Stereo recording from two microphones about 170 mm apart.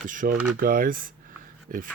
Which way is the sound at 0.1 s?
50° right (ahead or behind).